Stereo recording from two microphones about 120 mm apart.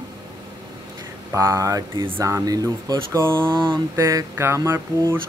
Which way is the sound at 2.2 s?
30° right (ahead or behind).